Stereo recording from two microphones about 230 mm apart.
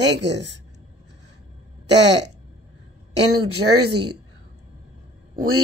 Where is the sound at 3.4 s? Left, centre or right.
Right.